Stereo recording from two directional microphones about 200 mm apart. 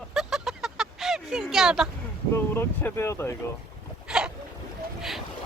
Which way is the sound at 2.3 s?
10° left (ahead or behind).